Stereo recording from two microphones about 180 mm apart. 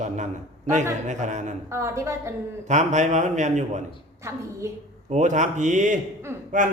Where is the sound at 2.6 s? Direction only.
40° right (ahead or behind).